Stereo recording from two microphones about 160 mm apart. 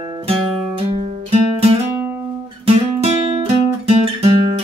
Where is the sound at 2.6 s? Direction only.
40° right (ahead or behind).